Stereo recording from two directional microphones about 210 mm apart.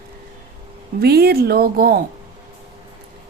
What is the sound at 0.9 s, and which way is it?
Speech, 50° right (ahead or behind).